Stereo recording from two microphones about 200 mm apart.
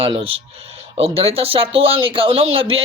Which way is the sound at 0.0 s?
25° right (ahead or behind).